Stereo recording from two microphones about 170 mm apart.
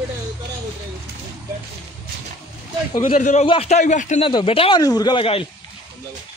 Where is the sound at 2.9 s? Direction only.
50° left (ahead or behind).